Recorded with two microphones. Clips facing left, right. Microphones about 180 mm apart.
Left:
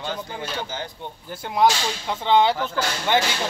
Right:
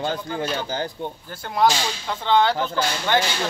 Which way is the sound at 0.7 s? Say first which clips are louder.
Right 6 dB; 35° right (ahead or behind).